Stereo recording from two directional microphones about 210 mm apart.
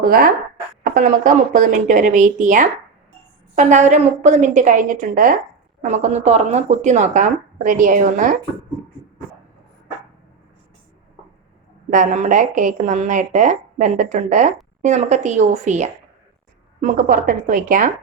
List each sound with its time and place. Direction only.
0.0 s speech: 45° right (ahead or behind)
11.9 s speech: 35° right (ahead or behind)